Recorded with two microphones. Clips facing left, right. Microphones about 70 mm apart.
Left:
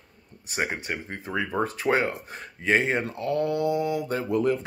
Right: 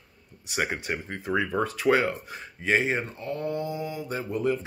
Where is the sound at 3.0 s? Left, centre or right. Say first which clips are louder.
Left 5 dB; left.